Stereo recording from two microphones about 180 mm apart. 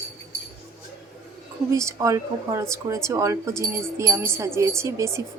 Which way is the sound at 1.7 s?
15° right (ahead or behind).